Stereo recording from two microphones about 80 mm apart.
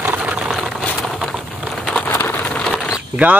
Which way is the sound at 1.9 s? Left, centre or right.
Left.